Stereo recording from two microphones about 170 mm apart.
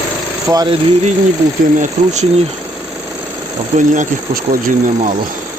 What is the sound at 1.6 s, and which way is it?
Speech, 45° right (ahead or behind).